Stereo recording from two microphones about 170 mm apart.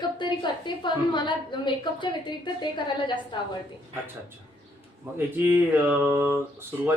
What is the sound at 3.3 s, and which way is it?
Speech, 30° left (ahead or behind).